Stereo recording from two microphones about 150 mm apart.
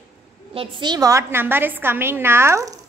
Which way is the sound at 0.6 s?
30° right (ahead or behind).